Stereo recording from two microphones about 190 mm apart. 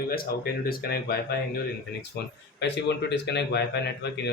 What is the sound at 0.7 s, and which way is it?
Speech, 55° left (ahead or behind).